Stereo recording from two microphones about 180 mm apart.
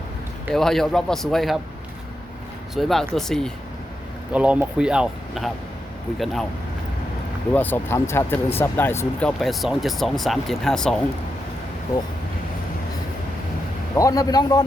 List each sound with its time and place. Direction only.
0.5 s speech: centre (ahead or behind)
2.7 s speech: centre (ahead or behind)
7.5 s speech: 10° left (ahead or behind)
9.4 s speech: centre (ahead or behind)
13.9 s a man's voice: 20° left (ahead or behind)